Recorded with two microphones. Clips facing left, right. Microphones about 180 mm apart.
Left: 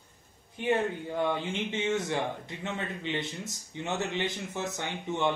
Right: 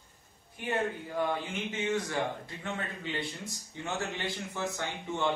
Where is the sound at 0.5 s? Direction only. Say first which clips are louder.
Left 4 dB; 25° left (ahead or behind).